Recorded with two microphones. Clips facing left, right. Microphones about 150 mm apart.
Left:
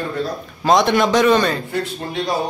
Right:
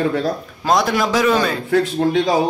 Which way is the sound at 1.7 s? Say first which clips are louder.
Right 8 dB; 90° right.